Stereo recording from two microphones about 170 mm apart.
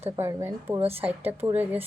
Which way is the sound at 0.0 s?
15° right (ahead or behind).